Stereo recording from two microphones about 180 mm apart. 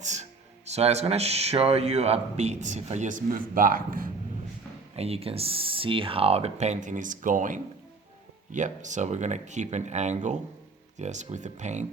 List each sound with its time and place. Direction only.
0.0 s speech: 40° right (ahead or behind)
4.9 s speech: 35° right (ahead or behind)